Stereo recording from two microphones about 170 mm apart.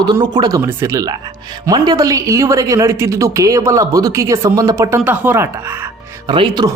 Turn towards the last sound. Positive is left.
turn(degrees=-25)  # may be behind; listen again after turning